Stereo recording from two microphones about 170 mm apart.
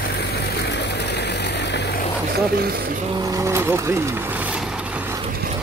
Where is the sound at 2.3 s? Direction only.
65° right (ahead or behind).